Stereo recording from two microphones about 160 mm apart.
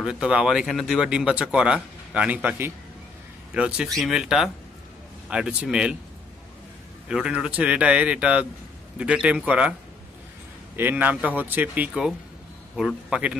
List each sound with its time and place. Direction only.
0.0 s speech: 5° right (ahead or behind)
7.1 s speech: 5° right (ahead or behind)
10.8 s speech: 10° right (ahead or behind)